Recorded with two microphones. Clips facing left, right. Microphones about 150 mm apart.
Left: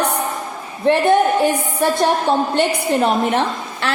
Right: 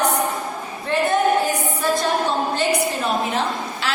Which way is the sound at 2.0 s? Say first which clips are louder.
Left 5 dB; 60° left (ahead or behind).